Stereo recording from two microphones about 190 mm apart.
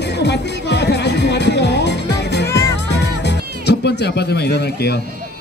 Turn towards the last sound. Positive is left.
turn(degrees=60)  # may be behind; listen again after turning